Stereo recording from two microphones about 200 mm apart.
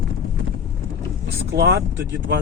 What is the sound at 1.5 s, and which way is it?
Speech, 55° right (ahead or behind).